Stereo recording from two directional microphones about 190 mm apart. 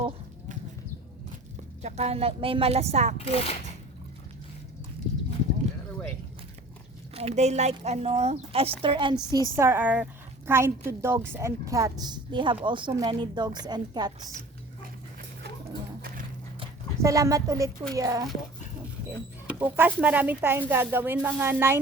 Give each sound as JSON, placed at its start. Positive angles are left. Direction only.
{"t": 1.8, "sound": "speech", "side_deg": -35}
{"t": 3.2, "sound": "speech", "side_deg": 30}
{"t": 7.1, "sound": "speech", "side_deg": -35}
{"t": 9.6, "sound": "a woman's voice", "side_deg": -10}
{"t": 16.0, "sound": "music", "side_deg": -50}
{"t": 17.0, "sound": "a woman's voice", "side_deg": -15}
{"t": 19.5, "sound": "a woman's voice", "side_deg": -10}